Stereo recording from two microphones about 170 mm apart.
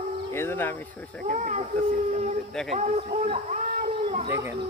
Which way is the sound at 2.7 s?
40° right (ahead or behind).